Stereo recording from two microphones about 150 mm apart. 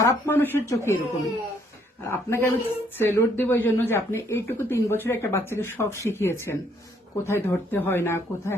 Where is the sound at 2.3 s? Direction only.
15° left (ahead or behind).